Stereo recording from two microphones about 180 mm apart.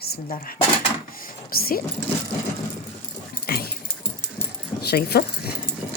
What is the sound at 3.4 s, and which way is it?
Dog, 60° left (ahead or behind).